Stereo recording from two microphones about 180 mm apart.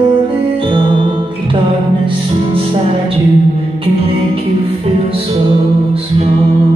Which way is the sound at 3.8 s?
30° right (ahead or behind).